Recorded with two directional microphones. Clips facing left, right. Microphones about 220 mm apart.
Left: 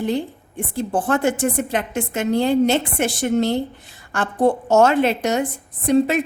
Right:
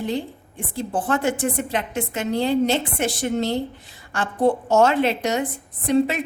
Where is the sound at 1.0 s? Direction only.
45° left (ahead or behind).